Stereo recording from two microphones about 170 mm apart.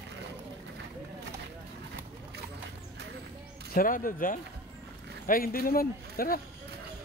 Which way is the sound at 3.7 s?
55° left (ahead or behind).